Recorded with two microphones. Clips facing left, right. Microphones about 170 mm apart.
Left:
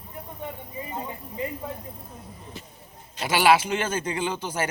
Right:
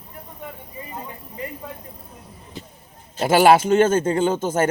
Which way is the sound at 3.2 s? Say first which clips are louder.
Right 6 dB; 45° right (ahead or behind).